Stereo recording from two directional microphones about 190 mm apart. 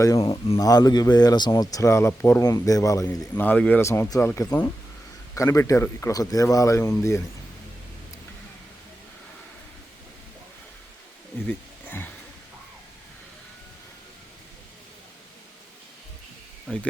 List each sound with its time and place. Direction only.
0.2 s speech: 30° left (ahead or behind)
0.6 s speech: 20° left (ahead or behind)
11.4 s a sound: 10° left (ahead or behind)
16.7 s speech: 5° left (ahead or behind)